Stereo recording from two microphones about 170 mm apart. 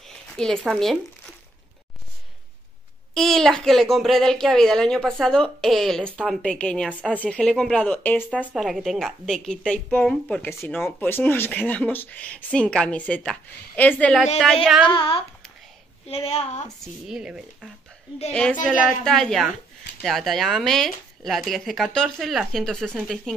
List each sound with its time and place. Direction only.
0.0 s zipper: centre (ahead or behind)
3.2 s a woman's voice: centre (ahead or behind)
14.9 s speech: 30° left (ahead or behind)
17.1 s a woman's voice: 5° right (ahead or behind)